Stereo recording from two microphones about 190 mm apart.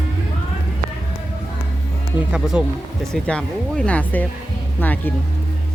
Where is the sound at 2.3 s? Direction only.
5° right (ahead or behind).